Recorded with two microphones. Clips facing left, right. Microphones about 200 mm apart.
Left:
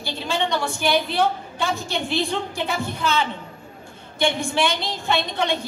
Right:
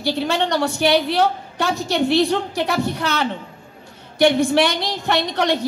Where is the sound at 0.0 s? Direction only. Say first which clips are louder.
Right 5 dB; 70° right (ahead or behind).